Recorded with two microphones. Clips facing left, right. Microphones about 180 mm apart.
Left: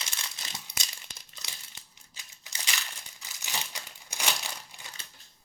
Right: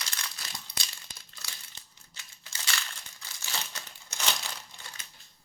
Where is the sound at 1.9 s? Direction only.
15° left (ahead or behind).